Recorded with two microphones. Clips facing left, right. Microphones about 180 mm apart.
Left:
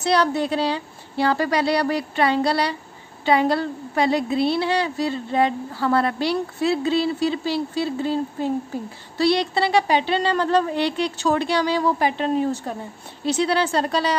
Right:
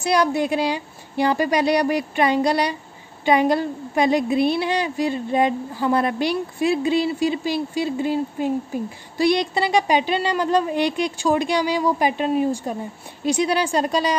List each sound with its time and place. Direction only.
0.0 s a woman's voice: 10° right (ahead or behind)